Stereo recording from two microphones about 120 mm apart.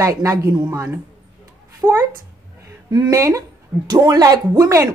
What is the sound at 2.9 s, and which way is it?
A woman's voice, 30° right (ahead or behind).